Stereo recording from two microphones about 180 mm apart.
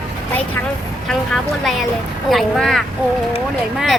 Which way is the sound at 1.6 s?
Centre (ahead or behind).